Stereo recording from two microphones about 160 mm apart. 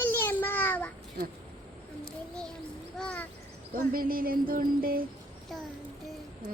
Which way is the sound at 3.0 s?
5° left (ahead or behind).